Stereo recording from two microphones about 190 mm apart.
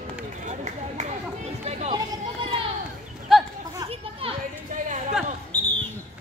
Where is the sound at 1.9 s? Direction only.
25° right (ahead or behind).